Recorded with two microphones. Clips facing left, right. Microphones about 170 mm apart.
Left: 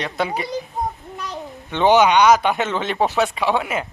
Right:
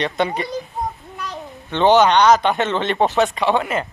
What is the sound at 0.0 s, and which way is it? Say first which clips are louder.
Speech: right 3 dB; 5° left (ahead or behind).